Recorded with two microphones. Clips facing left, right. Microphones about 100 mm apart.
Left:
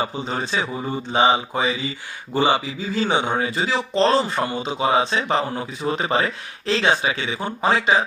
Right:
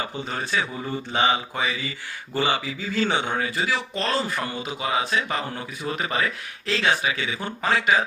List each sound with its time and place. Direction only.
0.0 s speech: 20° left (ahead or behind)